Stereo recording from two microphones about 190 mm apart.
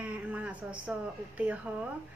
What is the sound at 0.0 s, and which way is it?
Speech, 5° right (ahead or behind).